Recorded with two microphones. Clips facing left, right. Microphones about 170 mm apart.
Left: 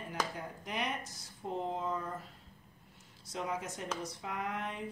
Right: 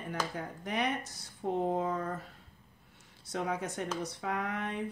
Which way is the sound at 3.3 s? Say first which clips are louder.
Right 4 dB; 65° right (ahead or behind).